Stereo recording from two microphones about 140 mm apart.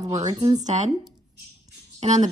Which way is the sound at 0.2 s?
30° right (ahead or behind).